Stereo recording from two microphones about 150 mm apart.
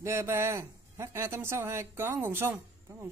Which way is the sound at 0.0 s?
15° right (ahead or behind).